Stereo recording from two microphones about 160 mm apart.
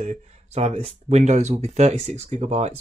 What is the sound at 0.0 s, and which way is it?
Speech, 45° right (ahead or behind).